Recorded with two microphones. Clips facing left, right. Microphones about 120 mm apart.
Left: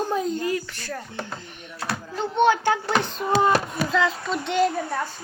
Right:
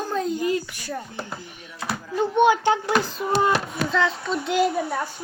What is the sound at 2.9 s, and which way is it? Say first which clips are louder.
A child's voice: even; 5° right (ahead or behind).